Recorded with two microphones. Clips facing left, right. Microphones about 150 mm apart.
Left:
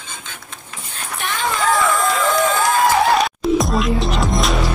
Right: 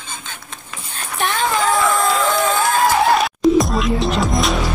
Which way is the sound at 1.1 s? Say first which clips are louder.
Right 4 dB; centre (ahead or behind).